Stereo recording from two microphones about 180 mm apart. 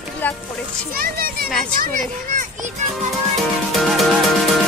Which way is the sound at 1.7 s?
50° right (ahead or behind).